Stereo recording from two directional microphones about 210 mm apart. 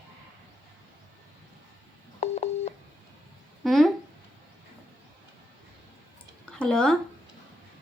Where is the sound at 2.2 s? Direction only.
30° left (ahead or behind).